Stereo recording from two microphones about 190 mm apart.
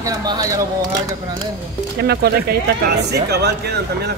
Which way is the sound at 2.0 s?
55° right (ahead or behind).